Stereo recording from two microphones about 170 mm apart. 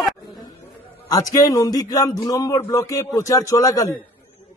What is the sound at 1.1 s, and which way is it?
A man's voice, 20° left (ahead or behind).